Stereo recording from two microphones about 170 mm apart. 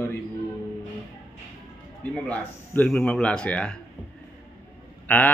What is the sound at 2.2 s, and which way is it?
Speech, 10° left (ahead or behind).